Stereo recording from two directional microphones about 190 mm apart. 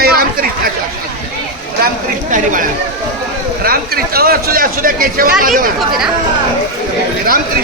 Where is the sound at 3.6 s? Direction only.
50° right (ahead or behind).